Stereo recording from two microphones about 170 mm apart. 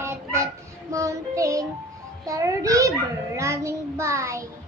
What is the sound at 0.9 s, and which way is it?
Child singing, 20° right (ahead or behind).